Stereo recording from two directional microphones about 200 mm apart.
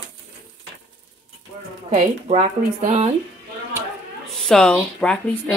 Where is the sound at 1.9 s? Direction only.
35° right (ahead or behind).